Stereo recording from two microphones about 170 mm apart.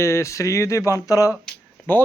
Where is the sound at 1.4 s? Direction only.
10° left (ahead or behind).